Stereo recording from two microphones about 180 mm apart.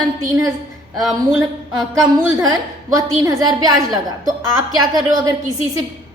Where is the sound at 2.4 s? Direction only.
20° right (ahead or behind).